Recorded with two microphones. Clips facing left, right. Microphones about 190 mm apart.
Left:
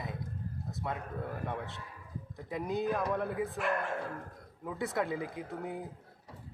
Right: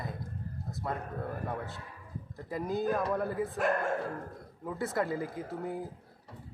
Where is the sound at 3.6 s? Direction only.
45° right (ahead or behind).